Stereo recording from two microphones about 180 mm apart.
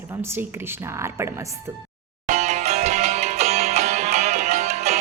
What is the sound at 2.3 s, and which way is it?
Music, 40° right (ahead or behind).